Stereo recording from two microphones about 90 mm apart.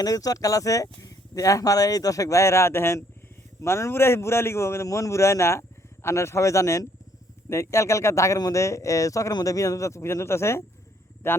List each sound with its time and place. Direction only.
0.0 s a man's voice: 45° left (ahead or behind); by 11.4 s 30° left (ahead or behind)